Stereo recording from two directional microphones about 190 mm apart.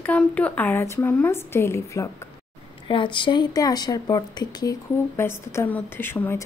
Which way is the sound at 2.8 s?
25° left (ahead or behind).